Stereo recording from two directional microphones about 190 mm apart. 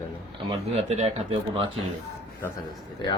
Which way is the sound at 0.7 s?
35° right (ahead or behind).